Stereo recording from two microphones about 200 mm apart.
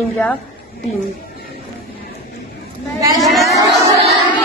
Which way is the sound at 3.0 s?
15° right (ahead or behind).